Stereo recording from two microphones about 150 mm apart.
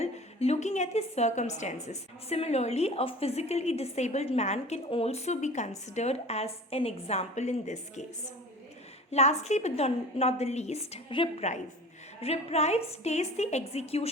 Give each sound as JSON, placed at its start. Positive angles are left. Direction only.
{"t": 0.0, "sound": "a woman's voice", "side_deg": 45}
{"t": 9.1, "sound": "a woman's voice", "side_deg": 50}